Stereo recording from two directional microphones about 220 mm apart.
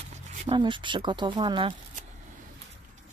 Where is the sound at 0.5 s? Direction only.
20° right (ahead or behind).